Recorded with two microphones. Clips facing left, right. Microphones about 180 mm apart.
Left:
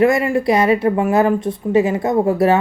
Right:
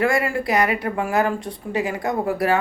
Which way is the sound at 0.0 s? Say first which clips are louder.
Left 6 dB; 20° left (ahead or behind).